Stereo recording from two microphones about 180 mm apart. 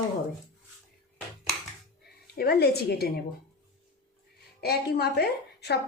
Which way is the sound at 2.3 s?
60° left (ahead or behind).